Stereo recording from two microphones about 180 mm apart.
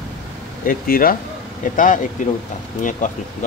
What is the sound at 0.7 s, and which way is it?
Speech, 50° left (ahead or behind).